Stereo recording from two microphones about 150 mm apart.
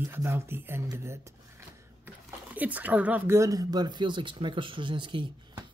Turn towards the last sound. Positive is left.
turn(degrees=-35)  # may be behind; listen again after turning